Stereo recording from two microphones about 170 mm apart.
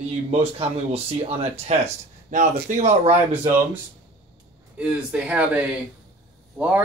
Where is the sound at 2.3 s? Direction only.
45° right (ahead or behind).